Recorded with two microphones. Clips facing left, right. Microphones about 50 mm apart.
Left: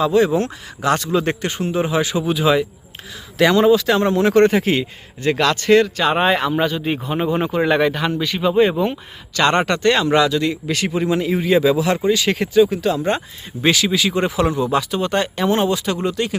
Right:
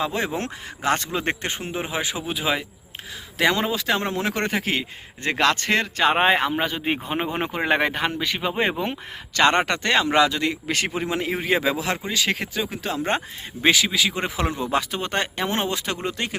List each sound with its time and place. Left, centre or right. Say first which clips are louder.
0.0 s a man's voice: left 9 dB; right; by 4.9 s centre
5.2 s a man's voice: left 4 dB; right
6.7 s a man's voice: left 4 dB; right
9.5 s speech: left 4 dB; centre; by 10.9 s right
10.9 s speech: left 7 dB; centre
11.2 s speech: left 6 dB; right; by 12.7 s centre
12.7 s a man's voice: left 6 dB; right
13.6 s speech: left 3 dB; centre
14.6 s a man's voice: left 5 dB; right